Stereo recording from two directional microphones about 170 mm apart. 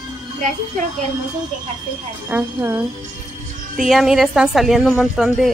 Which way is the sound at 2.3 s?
10° right (ahead or behind).